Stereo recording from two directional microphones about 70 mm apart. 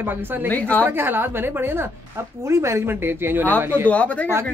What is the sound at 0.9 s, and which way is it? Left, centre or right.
Speech, right.